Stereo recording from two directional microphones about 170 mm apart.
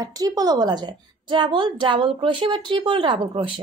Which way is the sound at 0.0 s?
20° right (ahead or behind).